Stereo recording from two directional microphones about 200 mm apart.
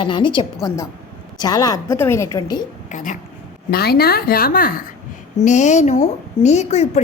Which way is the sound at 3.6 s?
50° left (ahead or behind).